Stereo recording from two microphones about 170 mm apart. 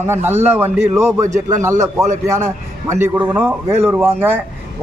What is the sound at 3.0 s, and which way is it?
Speech, 10° right (ahead or behind).